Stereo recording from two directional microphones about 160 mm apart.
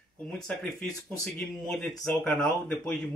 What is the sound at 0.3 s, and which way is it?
Speech, 5° left (ahead or behind).